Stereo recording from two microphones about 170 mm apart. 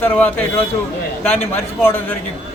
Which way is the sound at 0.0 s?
10° left (ahead or behind).